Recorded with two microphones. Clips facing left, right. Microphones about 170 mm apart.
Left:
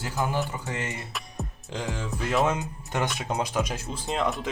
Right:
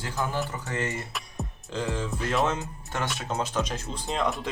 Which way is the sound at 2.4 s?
15° left (ahead or behind).